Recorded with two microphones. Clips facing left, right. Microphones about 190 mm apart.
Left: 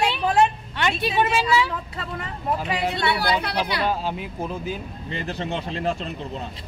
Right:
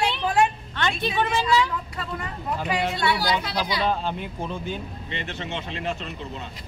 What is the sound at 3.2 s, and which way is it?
Speech, 65° left (ahead or behind).